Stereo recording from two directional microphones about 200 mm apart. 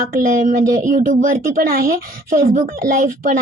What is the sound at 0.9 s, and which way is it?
Speech, 45° right (ahead or behind).